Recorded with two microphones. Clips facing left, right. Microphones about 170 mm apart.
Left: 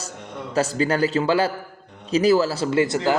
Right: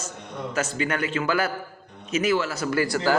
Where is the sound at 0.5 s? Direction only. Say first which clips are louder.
Left 6 dB; 35° left (ahead or behind).